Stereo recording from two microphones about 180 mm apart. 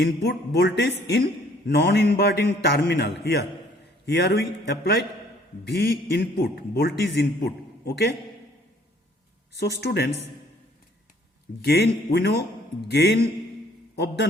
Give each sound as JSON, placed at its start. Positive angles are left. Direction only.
{"t": 0.0, "sound": "a man's voice", "side_deg": 65}
{"t": 9.6, "sound": "a man's voice", "side_deg": 65}
{"t": 11.6, "sound": "a man's voice", "side_deg": 65}